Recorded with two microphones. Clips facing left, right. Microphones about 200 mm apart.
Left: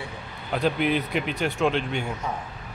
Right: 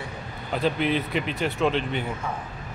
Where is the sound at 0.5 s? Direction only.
5° left (ahead or behind).